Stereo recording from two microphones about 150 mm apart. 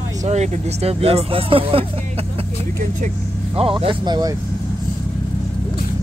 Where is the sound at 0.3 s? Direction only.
45° right (ahead or behind).